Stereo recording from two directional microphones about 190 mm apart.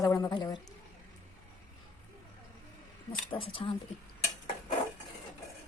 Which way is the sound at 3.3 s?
30° left (ahead or behind).